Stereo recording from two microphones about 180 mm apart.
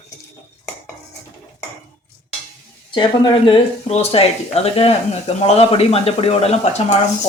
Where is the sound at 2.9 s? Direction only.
25° left (ahead or behind).